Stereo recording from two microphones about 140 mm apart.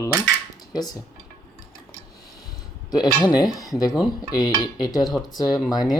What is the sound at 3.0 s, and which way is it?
Speech, 30° left (ahead or behind).